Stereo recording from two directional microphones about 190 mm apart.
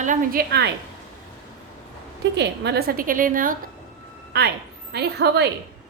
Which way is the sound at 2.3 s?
65° right (ahead or behind).